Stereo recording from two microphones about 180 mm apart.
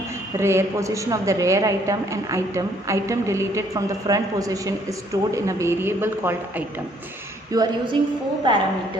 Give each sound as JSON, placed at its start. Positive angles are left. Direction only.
{"t": 0.3, "sound": "a woman's voice", "side_deg": -15}